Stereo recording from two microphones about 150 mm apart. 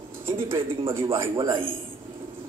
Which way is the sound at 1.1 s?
20° right (ahead or behind).